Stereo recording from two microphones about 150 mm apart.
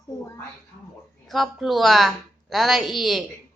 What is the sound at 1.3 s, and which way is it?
A woman's voice, centre (ahead or behind).